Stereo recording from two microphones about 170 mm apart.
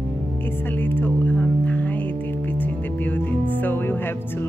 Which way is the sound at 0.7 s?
10° left (ahead or behind).